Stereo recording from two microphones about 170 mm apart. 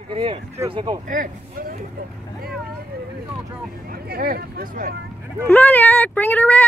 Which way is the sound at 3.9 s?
60° right (ahead or behind).